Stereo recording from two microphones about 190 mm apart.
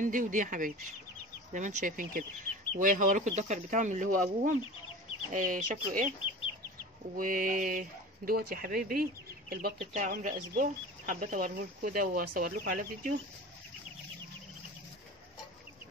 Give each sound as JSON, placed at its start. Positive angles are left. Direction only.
{"t": 0.0, "sound": "speech", "side_deg": -45}
{"t": 7.2, "sound": "speech", "side_deg": -45}
{"t": 9.8, "sound": "speech", "side_deg": -40}